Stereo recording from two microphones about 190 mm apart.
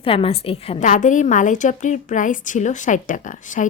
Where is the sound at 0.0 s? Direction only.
30° left (ahead or behind).